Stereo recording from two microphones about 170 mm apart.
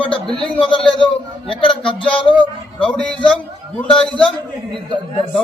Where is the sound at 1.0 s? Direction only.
30° left (ahead or behind).